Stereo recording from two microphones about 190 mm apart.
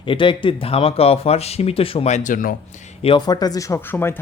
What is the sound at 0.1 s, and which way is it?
Speech, 25° left (ahead or behind).